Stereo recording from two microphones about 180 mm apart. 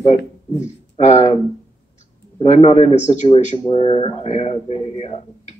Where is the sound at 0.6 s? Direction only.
40° left (ahead or behind).